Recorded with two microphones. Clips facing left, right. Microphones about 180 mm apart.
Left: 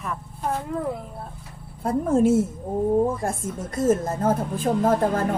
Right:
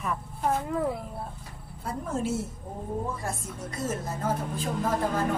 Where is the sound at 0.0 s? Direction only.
Centre (ahead or behind).